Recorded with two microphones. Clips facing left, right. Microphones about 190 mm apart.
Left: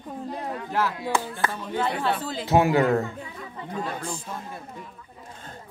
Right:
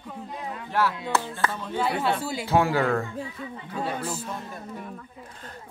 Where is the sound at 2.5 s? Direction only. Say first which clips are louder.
Left 3 dB; 20° left (ahead or behind).